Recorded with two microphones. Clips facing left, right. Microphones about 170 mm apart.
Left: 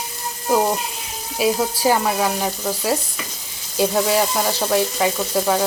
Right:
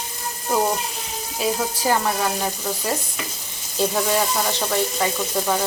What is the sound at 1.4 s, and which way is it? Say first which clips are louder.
Frying: left 5 dB; 10° left (ahead or behind).